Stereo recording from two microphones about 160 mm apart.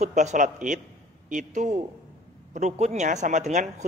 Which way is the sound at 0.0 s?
45° right (ahead or behind).